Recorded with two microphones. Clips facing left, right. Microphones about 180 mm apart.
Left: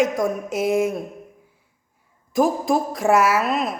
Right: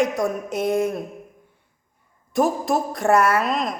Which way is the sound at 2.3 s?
Centre (ahead or behind).